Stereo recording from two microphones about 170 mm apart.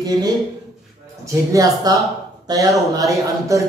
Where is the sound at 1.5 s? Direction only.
20° right (ahead or behind).